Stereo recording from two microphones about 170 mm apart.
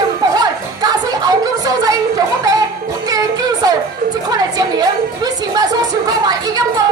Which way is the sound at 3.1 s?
20° right (ahead or behind).